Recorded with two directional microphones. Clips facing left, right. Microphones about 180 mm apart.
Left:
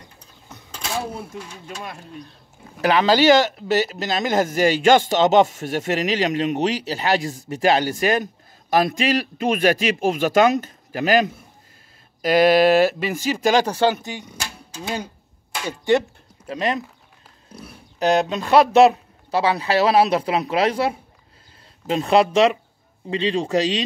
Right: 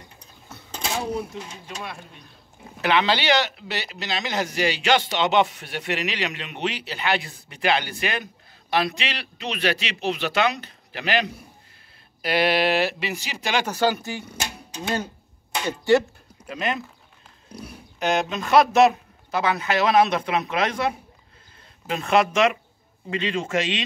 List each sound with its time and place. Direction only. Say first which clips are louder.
1.8 s a man's voice: left 2 dB; 35° left (ahead or behind); by 14.2 s 20° left (ahead or behind)
16.4 s a man's voice: left 4 dB; 35° left (ahead or behind)
17.9 s a man's voice: left 5 dB; 35° left (ahead or behind)